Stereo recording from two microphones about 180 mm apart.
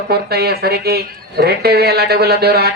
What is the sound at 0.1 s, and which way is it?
Speech, 60° right (ahead or behind).